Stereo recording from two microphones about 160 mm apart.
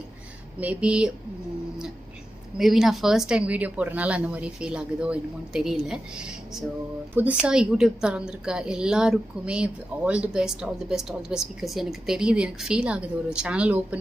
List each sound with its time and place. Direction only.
0.6 s speech: 10° right (ahead or behind)
2.6 s a woman's voice: centre (ahead or behind)